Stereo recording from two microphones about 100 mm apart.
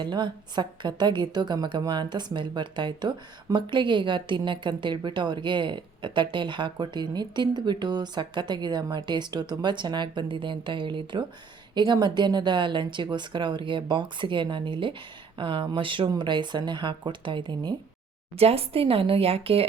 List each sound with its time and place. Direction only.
0.0 s speech: 50° right (ahead or behind)
18.3 s speech: 85° right